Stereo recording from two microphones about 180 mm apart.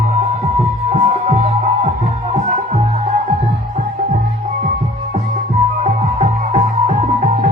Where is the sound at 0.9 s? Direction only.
40° right (ahead or behind).